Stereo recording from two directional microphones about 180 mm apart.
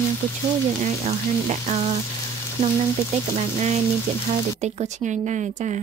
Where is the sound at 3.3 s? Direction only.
40° right (ahead or behind).